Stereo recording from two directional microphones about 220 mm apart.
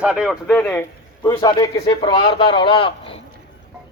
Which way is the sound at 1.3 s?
20° left (ahead or behind).